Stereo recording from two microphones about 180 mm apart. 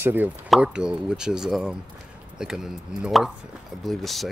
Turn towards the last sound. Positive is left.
turn(degrees=0)  # may be behind; listen again after turning